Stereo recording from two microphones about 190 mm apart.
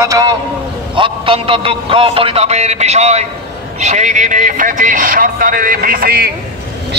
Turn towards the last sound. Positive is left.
turn(degrees=-55)  # may be behind; listen again after turning